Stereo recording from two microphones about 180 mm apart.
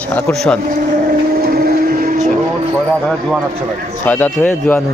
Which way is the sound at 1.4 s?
55° right (ahead or behind).